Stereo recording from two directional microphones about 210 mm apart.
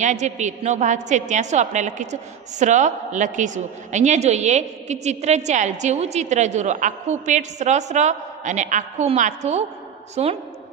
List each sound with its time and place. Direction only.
0.0 s a woman's voice: 35° right (ahead or behind)